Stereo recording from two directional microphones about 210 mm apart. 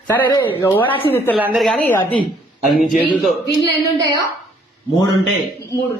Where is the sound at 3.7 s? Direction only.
15° right (ahead or behind).